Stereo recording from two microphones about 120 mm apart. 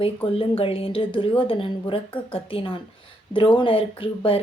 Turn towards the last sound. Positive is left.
turn(degrees=50)  # may be behind; listen again after turning